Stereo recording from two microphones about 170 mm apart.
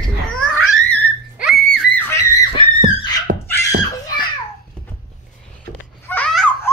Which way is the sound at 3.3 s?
70° right (ahead or behind).